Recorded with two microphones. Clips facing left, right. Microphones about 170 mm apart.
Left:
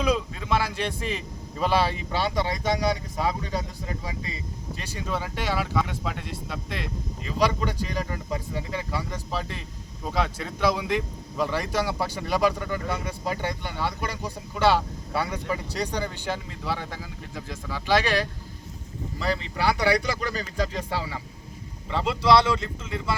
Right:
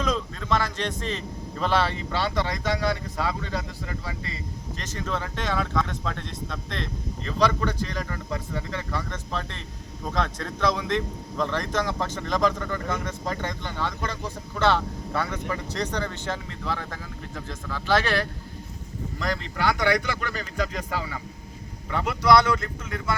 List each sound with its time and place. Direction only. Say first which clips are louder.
0.0 s a man's voice: left 2 dB; 10° left (ahead or behind)
19.2 s speech: left 1 dB; 30° left (ahead or behind)